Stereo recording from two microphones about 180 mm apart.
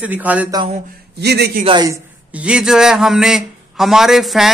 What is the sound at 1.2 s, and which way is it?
Speech, 65° right (ahead or behind).